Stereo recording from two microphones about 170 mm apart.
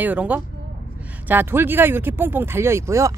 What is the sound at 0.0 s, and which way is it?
Speech, 10° right (ahead or behind).